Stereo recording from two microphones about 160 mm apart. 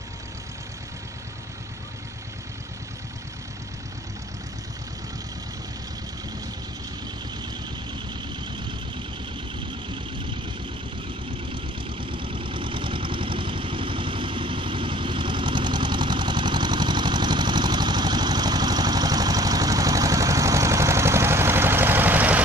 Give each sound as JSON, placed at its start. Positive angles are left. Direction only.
{"t": 11.5, "sound": "vehicle", "side_deg": -30}